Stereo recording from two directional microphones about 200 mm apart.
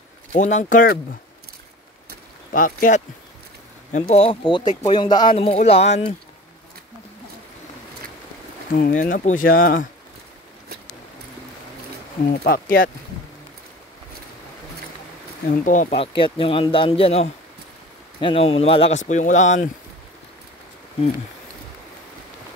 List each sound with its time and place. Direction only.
0.3 s speech: 35° left (ahead or behind)
2.5 s speech: 40° left (ahead or behind)
4.1 s speech: 30° left (ahead or behind)
8.7 s speech: 40° left (ahead or behind)
12.3 s speech: 45° left (ahead or behind)
15.6 s speech: 40° left (ahead or behind)
16.0 s speech: 25° left (ahead or behind)